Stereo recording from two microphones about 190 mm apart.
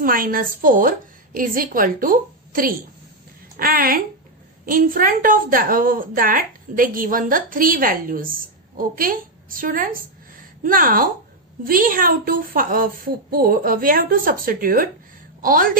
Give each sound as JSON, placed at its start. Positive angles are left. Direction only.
{"t": 0.0, "sound": "a woman's voice", "side_deg": -50}